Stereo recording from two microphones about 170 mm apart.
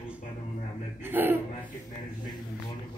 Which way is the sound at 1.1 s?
10° right (ahead or behind).